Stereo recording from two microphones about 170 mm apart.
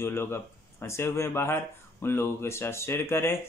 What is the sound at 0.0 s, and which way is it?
Speech, 15° left (ahead or behind).